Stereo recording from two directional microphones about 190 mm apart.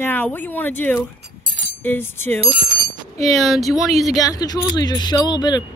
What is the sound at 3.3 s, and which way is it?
Speech, centre (ahead or behind).